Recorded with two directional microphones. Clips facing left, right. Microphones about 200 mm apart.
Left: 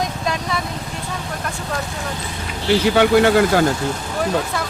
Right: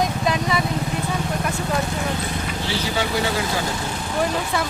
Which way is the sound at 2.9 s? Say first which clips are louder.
Left 10 dB; 60° left (ahead or behind).